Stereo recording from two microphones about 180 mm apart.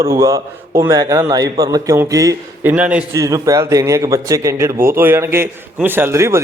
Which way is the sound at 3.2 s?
20° right (ahead or behind).